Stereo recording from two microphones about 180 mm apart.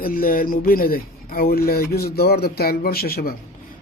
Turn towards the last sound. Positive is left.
turn(degrees=55)  # may be behind; listen again after turning